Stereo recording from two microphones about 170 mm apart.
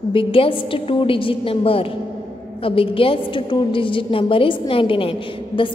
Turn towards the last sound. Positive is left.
turn(degrees=30)  # may be behind; listen again after turning